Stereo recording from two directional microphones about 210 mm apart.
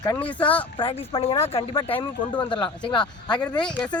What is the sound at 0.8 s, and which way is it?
Speech, 25° left (ahead or behind).